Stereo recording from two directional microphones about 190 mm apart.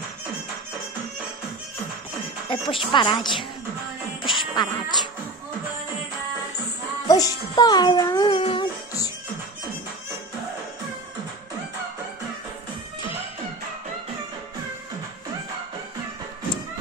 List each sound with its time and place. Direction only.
2.4 s speech: 25° left (ahead or behind)
4.3 s music: 25° left (ahead or behind)
7.1 s a child's voice: 20° left (ahead or behind)